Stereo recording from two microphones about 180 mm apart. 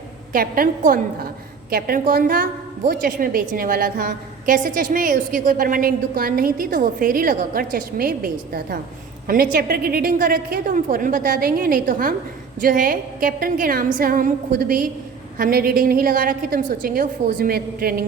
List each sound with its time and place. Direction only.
0.3 s a woman's voice: 50° right (ahead or behind)